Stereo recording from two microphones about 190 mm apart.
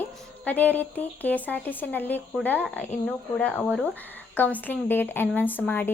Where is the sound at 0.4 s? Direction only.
10° left (ahead or behind).